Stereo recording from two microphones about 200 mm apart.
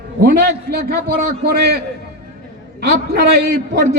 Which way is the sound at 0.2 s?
50° right (ahead or behind).